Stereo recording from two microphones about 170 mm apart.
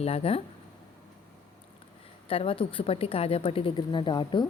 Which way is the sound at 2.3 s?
35° left (ahead or behind).